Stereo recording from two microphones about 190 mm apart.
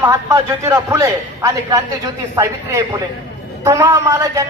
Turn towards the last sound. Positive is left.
turn(degrees=-15)  # may be behind; listen again after turning